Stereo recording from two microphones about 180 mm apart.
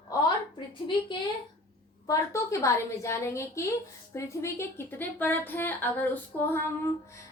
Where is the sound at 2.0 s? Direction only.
20° left (ahead or behind).